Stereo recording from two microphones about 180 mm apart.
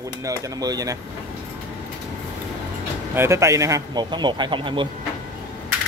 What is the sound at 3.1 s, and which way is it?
A man's voice, 15° right (ahead or behind).